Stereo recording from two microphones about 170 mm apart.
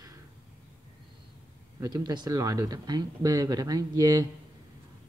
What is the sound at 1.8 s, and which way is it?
Speech, 25° right (ahead or behind).